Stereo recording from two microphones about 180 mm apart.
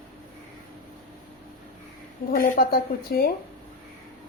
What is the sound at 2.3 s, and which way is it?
Speech, 55° left (ahead or behind).